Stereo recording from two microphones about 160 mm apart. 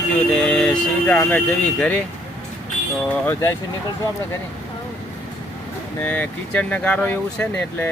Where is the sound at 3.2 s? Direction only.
20° left (ahead or behind).